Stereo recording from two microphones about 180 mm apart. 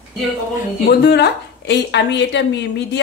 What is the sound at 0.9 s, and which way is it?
Speech, 65° left (ahead or behind).